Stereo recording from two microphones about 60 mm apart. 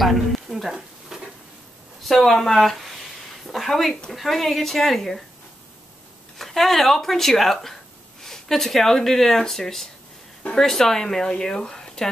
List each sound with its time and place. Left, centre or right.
0.0 s a sound: centre
2.0 s speech: centre
6.3 s speech: centre